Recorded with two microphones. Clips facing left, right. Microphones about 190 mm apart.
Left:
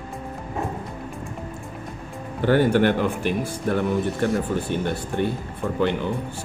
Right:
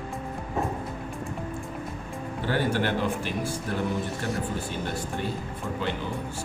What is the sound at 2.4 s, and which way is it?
Speech, 60° left (ahead or behind).